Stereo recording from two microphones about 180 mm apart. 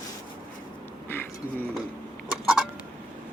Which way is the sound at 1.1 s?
10° left (ahead or behind).